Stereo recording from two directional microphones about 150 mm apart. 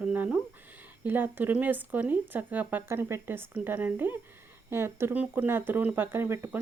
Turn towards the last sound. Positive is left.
turn(degrees=-15)  # may be behind; listen again after turning